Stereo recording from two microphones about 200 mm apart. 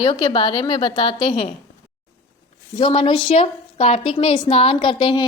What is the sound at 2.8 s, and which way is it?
A woman's voice, 25° left (ahead or behind).